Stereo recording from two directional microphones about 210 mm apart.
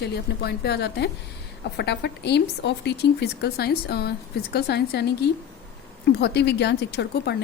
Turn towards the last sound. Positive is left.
turn(degrees=55)  # may be behind; listen again after turning